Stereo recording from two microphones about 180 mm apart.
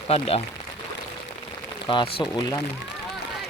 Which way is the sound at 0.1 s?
35° left (ahead or behind).